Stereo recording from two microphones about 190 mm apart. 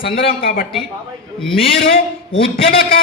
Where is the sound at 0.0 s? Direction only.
50° left (ahead or behind).